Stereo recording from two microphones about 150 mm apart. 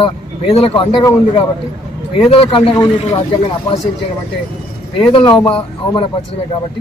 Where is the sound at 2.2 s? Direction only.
40° left (ahead or behind).